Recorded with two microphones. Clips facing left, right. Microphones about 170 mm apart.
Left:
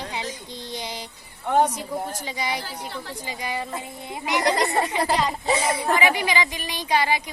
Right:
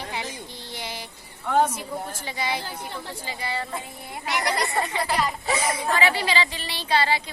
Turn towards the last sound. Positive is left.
turn(degrees=15)  # may be behind; listen again after turning